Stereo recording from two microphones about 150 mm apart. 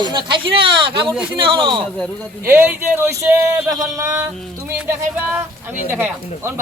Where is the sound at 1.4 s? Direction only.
35° right (ahead or behind).